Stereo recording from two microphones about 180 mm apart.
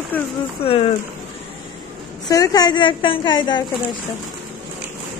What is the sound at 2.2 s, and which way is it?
A woman's voice, 20° left (ahead or behind).